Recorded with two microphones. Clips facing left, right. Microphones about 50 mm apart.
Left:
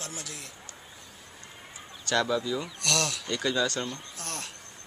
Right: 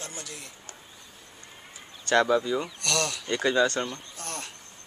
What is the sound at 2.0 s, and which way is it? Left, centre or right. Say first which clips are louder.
Speech: right 5 dB; right.